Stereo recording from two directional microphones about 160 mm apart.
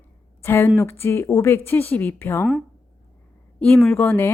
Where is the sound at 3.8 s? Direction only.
10° left (ahead or behind).